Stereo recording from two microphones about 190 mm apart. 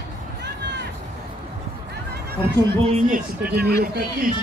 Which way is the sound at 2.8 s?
35° right (ahead or behind).